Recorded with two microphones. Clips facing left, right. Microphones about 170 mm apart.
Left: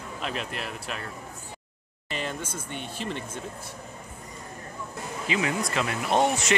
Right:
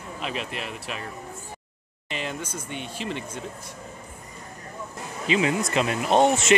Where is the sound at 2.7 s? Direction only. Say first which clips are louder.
Right 1 dB; 50° left (ahead or behind).